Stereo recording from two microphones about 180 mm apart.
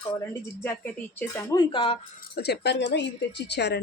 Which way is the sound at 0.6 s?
10° left (ahead or behind).